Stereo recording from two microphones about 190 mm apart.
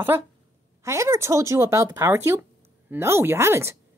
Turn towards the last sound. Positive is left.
turn(degrees=-15)  # may be behind; listen again after turning